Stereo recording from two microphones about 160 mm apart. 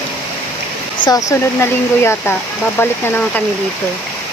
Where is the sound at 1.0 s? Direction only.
55° left (ahead or behind).